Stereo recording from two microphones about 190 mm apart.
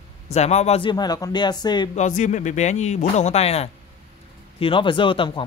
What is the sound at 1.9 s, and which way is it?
Speech, 40° left (ahead or behind).